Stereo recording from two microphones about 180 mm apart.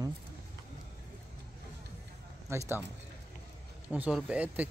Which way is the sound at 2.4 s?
15° right (ahead or behind).